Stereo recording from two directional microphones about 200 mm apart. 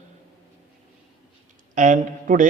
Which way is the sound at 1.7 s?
40° right (ahead or behind).